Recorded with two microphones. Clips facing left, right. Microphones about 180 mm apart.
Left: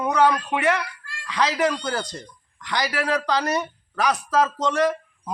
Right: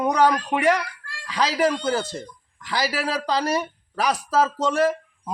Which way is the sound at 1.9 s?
5° right (ahead or behind).